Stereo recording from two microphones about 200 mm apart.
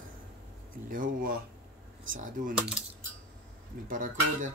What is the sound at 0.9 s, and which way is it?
Speech, 45° right (ahead or behind).